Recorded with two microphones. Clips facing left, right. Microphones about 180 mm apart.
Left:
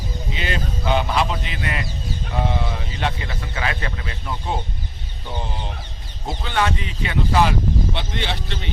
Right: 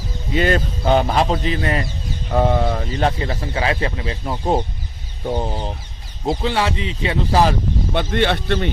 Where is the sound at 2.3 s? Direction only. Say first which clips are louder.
Right 8 dB; 50° right (ahead or behind); by 4.3 s 25° right (ahead or behind).